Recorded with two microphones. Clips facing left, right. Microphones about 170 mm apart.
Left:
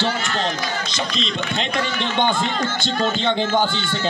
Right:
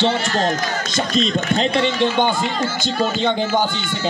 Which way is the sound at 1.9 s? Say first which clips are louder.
Right 3 dB; 10° right (ahead or behind).